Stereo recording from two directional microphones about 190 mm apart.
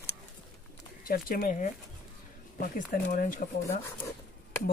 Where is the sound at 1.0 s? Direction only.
50° left (ahead or behind).